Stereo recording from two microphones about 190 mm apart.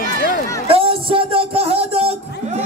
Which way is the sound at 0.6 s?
30° right (ahead or behind).